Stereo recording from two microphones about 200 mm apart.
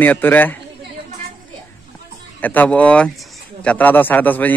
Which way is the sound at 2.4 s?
10° left (ahead or behind).